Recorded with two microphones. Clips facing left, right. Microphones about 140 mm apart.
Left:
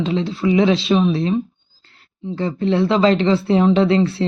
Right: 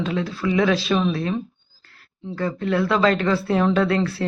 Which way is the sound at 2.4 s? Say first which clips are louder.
Left 4 dB; 25° left (ahead or behind).